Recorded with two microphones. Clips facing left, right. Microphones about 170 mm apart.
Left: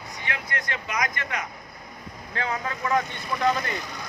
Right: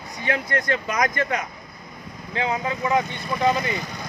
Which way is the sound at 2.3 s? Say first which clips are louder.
Right 5 dB; 20° right (ahead or behind).